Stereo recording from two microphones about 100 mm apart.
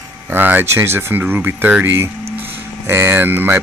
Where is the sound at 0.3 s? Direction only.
20° right (ahead or behind).